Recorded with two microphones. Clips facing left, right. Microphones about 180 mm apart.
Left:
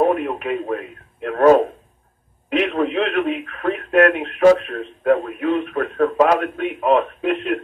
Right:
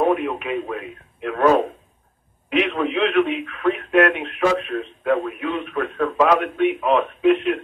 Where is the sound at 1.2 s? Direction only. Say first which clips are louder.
Left 4 dB; 40° left (ahead or behind).